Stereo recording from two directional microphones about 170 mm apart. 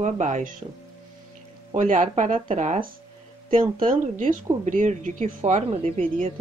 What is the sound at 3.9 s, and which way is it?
Speech, 50° right (ahead or behind).